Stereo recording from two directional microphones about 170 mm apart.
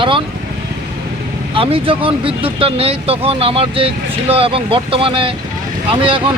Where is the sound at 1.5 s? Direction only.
30° right (ahead or behind).